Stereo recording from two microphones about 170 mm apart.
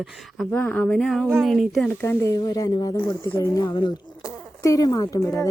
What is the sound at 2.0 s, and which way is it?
Speech, 15° left (ahead or behind).